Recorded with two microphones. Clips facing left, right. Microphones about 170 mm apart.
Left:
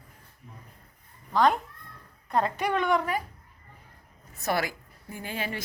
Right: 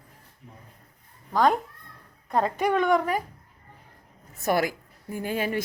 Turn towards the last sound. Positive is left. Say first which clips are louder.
# right 6 dB
turn(degrees=-50)  # may be behind; listen again after turning